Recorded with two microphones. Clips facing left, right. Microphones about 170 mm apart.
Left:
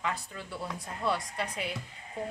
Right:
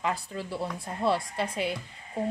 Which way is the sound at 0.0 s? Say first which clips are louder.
Right 5 dB; 35° right (ahead or behind).